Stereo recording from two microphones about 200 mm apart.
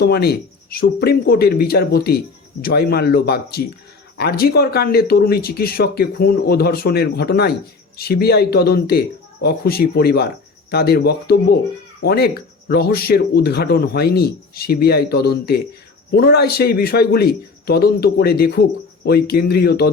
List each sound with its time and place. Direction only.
0.0 s speech: 55° left (ahead or behind)